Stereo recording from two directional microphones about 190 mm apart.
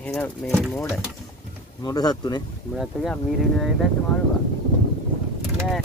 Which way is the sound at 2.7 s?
Centre (ahead or behind).